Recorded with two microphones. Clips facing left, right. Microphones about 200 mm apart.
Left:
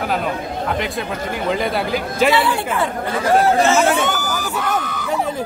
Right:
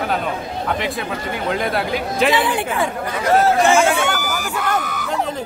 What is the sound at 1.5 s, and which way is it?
Speech, centre (ahead or behind).